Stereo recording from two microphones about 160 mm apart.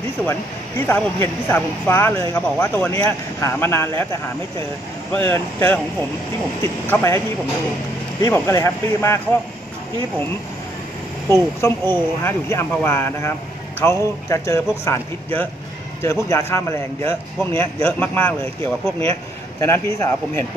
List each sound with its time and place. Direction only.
0.8 s a man's voice: 15° left (ahead or behind)
5.1 s a man's voice: 15° left (ahead or behind)
8.2 s a man's voice: 20° left (ahead or behind)
11.2 s a man's voice: 15° left (ahead or behind)
16.0 s a man's voice: 15° left (ahead or behind)